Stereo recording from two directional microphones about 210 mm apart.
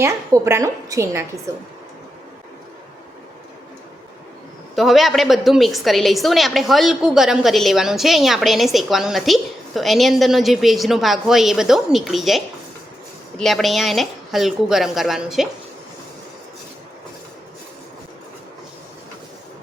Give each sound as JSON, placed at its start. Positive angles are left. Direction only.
{"t": 0.0, "sound": "a woman's voice", "side_deg": -10}
{"t": 4.7, "sound": "a woman's voice", "side_deg": 0}
{"t": 13.4, "sound": "a woman's voice", "side_deg": 0}